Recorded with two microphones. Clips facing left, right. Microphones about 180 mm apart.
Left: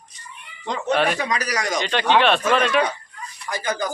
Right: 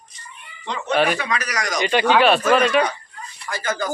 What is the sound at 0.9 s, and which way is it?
Speech, centre (ahead or behind).